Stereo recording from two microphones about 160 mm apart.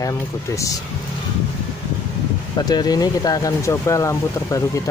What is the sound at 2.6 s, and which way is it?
Speech, 25° left (ahead or behind).